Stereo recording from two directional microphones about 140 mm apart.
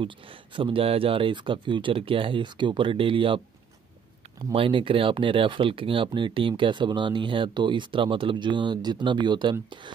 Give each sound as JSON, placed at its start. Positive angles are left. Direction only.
{"t": 0.6, "sound": "speech", "side_deg": -40}
{"t": 4.5, "sound": "speech", "side_deg": -35}